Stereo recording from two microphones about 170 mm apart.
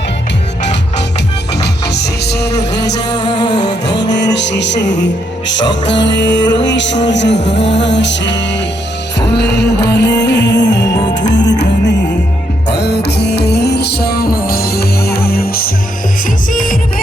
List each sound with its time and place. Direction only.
1.6 s music: 80° left
3.2 s music: 25° left (ahead or behind)
4.1 s music: 90° left
10.8 s music: 20° left (ahead or behind)
11.3 s music: 90° left
12.6 s music: 80° left; by 16.7 s 55° left (ahead or behind)